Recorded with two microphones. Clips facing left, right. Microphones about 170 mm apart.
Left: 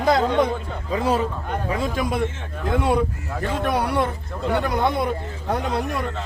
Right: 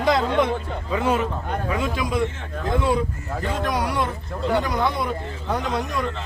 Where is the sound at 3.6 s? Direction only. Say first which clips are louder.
Left 3 dB; 60° left (ahead or behind).